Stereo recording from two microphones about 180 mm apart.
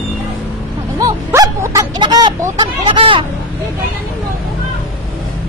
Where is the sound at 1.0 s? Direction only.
20° right (ahead or behind).